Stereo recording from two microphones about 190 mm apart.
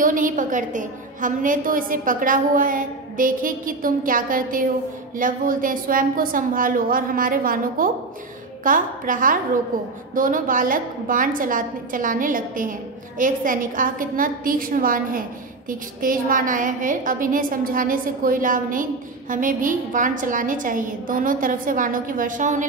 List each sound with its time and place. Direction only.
0.0 s a woman's voice: 45° right (ahead or behind)